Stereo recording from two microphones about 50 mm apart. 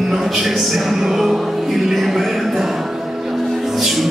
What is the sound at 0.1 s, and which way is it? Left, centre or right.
Music, centre.